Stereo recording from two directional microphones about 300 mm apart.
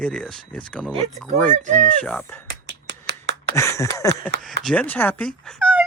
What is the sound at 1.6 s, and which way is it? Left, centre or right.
Speech, right.